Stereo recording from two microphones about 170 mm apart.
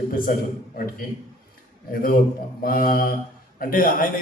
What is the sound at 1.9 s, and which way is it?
Mantra, 60° left (ahead or behind).